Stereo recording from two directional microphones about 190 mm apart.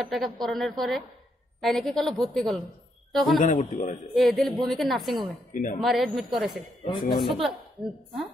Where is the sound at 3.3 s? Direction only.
40° left (ahead or behind).